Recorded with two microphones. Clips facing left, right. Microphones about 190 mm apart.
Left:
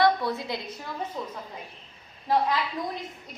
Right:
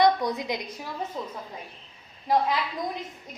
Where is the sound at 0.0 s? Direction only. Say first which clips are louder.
Right 1 dB; 15° right (ahead or behind).